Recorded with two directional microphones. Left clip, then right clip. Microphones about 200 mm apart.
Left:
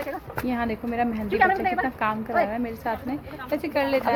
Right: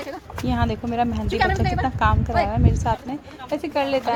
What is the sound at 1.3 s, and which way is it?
Speech, 45° right (ahead or behind).